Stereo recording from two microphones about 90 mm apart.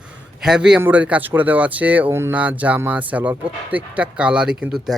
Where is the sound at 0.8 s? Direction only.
20° right (ahead or behind).